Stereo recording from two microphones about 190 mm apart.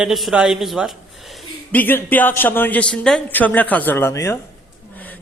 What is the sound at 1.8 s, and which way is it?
A man's voice, 10° left (ahead or behind).